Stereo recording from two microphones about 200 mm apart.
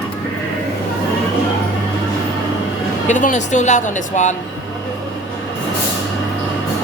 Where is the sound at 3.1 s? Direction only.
40° left (ahead or behind).